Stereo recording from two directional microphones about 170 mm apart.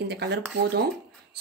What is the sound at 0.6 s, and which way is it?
Speech, 70° right (ahead or behind).